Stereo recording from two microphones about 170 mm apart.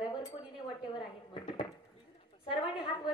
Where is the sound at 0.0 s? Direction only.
25° left (ahead or behind).